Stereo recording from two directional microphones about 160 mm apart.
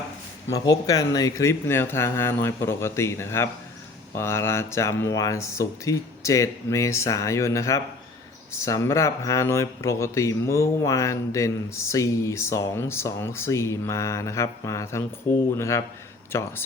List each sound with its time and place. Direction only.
0.5 s speech: 20° left (ahead or behind)